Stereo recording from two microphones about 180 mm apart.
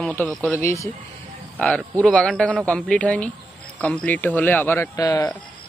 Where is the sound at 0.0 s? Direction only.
5° left (ahead or behind).